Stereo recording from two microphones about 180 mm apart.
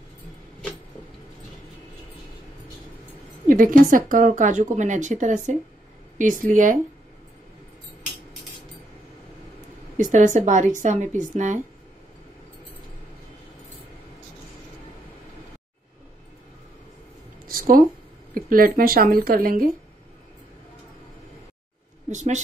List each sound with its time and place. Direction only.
3.4 s speech: 50° right (ahead or behind)
9.9 s speech: 45° right (ahead or behind)
17.5 s a sound: 50° right (ahead or behind)
18.3 s speech: 50° right (ahead or behind)
22.1 s a woman's voice: 40° right (ahead or behind)